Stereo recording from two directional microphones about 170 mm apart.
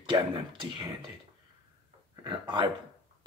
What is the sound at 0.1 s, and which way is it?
Speech, 20° right (ahead or behind).